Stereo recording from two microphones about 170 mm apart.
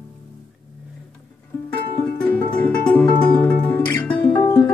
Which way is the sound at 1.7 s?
10° left (ahead or behind).